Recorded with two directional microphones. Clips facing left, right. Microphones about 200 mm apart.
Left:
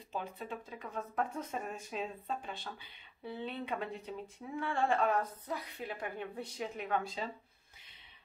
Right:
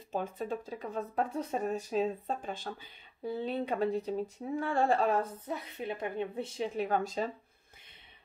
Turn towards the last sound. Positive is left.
turn(degrees=-45)  # may be behind; listen again after turning